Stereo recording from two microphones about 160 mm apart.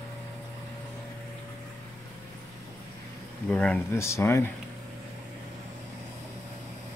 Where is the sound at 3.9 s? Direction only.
15° left (ahead or behind).